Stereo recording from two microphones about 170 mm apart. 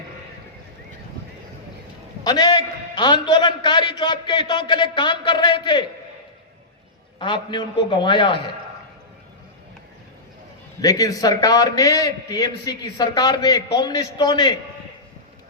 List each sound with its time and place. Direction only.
2.2 s a man's voice: 25° left (ahead or behind)
7.2 s a man's voice: 30° left (ahead or behind)
10.8 s a man's voice: 20° left (ahead or behind)